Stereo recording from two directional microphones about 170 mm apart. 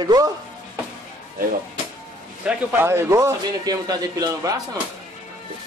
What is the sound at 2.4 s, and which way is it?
A man's voice, 10° right (ahead or behind).